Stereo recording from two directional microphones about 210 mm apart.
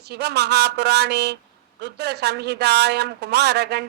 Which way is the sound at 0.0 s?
50° right (ahead or behind).